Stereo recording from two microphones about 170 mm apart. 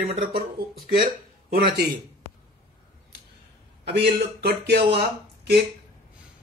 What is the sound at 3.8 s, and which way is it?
Speech, 75° right (ahead or behind).